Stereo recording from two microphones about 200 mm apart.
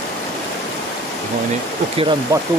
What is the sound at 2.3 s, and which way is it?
Speech, 15° right (ahead or behind).